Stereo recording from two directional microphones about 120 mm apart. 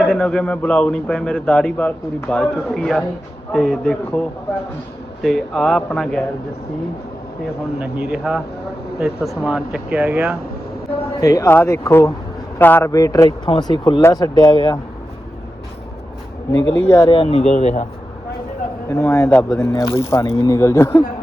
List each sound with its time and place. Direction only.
0.0 s speech: 10° left (ahead or behind)
5.2 s speech: centre (ahead or behind)
7.8 s speech: 10° right (ahead or behind)
11.2 s a man's voice: 25° left (ahead or behind)
12.9 s speech: 30° left (ahead or behind)
16.5 s speech: 20° left (ahead or behind)
17.1 s speech: 50° left (ahead or behind); by 17.8 s 75° left (ahead or behind)
18.9 s speech: 25° left (ahead or behind)
19.3 s speech: 10° left (ahead or behind)
19.6 s speech: 25° left (ahead or behind)